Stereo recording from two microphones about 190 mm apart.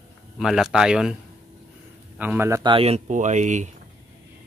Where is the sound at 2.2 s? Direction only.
10° right (ahead or behind).